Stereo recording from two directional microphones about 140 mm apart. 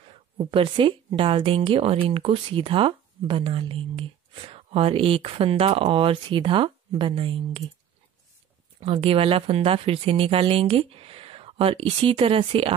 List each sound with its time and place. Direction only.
0.4 s speech: 40° right (ahead or behind)
8.7 s speech: 40° right (ahead or behind)